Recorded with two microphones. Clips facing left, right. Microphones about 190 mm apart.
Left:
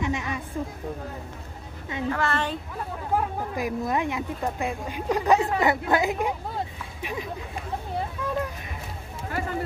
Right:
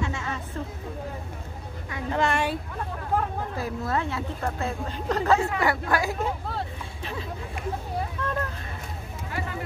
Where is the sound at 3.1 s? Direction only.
15° left (ahead or behind).